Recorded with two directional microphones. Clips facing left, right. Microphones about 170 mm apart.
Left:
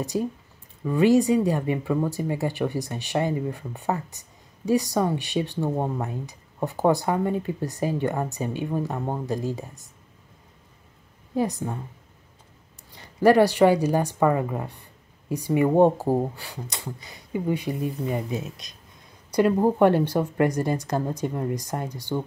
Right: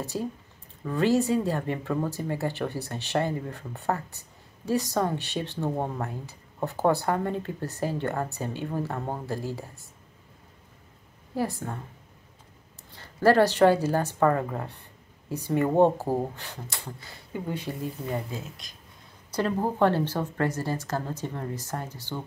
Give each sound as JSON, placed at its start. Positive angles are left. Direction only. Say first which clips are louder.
{"t": 0.0, "sound": "speech", "louder": "left 5 dB", "side_deg": 15}
{"t": 11.3, "sound": "a woman's voice", "louder": "left 4 dB", "side_deg": 20}
{"t": 12.9, "sound": "speech", "louder": "left 3 dB", "side_deg": 15}